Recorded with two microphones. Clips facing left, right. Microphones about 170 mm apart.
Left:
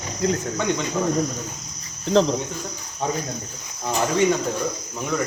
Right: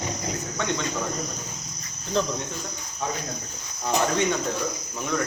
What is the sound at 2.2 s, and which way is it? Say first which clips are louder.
Cricket: left 7 dB; 90° left.